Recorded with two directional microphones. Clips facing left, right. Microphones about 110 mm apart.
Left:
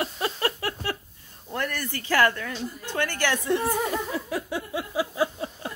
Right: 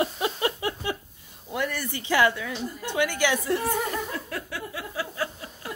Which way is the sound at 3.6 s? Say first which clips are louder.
Left 1 dB; 15° left (ahead or behind).